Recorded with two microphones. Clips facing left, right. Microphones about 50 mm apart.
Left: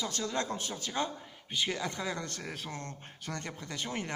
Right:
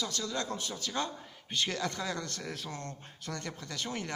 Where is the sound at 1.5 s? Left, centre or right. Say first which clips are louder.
Even; centre.